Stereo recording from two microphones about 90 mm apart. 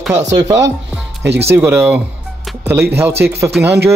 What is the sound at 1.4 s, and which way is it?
Speech, 30° right (ahead or behind).